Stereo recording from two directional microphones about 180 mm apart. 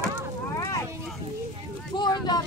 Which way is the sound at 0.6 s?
20° left (ahead or behind).